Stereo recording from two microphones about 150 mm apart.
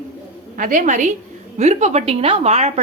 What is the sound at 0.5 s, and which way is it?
A woman's voice, 65° right (ahead or behind).